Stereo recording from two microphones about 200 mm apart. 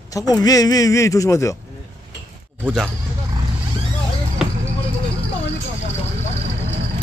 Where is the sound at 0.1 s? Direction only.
20° left (ahead or behind).